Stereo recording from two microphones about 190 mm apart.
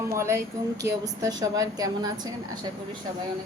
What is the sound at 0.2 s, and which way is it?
Speech, 15° right (ahead or behind).